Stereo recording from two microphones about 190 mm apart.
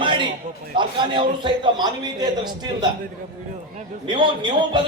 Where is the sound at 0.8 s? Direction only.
25° right (ahead or behind).